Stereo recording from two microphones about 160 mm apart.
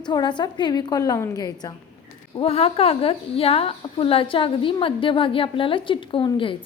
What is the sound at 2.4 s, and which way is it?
A woman's voice, 40° left (ahead or behind).